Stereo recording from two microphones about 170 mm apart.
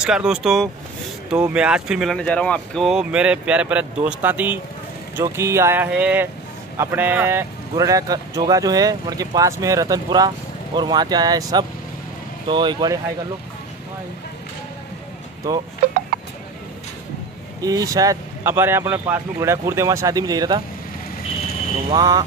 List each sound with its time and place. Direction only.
0.0 s speech: 5° right (ahead or behind); by 13.0 s 25° right (ahead or behind)
17.6 s speech: 20° right (ahead or behind)
21.9 s speech: 20° right (ahead or behind)